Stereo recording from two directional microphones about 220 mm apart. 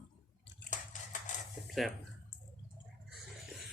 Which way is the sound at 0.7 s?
35° left (ahead or behind).